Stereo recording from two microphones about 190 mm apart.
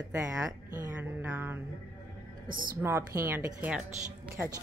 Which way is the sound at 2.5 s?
45° right (ahead or behind).